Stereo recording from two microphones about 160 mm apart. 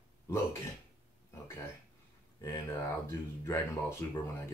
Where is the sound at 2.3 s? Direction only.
20° left (ahead or behind).